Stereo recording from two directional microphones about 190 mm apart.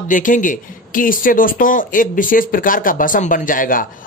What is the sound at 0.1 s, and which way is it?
Speech, 45° left (ahead or behind).